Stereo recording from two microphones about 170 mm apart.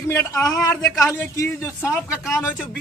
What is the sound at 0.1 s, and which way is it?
A man's voice, 15° left (ahead or behind).